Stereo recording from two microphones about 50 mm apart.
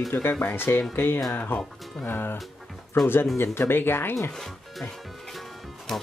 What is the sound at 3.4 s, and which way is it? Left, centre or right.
Speech, left.